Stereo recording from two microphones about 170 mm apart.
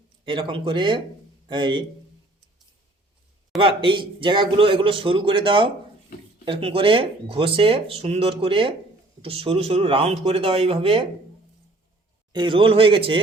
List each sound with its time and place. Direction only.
0.3 s speech: 30° right (ahead or behind)
3.6 s speech: 30° right (ahead or behind)
12.3 s speech: 30° right (ahead or behind)